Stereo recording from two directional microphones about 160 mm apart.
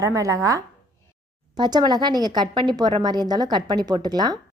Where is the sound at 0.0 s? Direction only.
20° right (ahead or behind).